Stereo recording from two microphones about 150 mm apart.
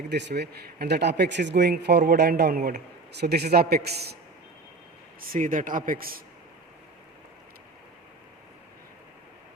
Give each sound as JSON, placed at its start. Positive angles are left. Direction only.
{"t": 0.1, "sound": "speech", "side_deg": -90}
{"t": 5.3, "sound": "speech", "side_deg": -65}